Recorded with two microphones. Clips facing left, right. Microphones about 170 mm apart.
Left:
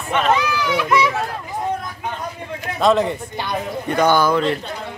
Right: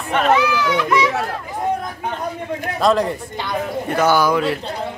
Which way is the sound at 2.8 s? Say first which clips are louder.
Left 1 dB; centre (ahead or behind).